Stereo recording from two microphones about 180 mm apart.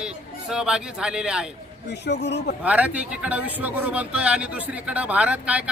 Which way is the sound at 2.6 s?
10° right (ahead or behind).